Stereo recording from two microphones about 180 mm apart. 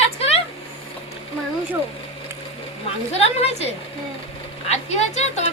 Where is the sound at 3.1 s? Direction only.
35° left (ahead or behind).